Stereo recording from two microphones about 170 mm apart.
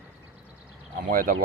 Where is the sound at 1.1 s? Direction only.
55° right (ahead or behind).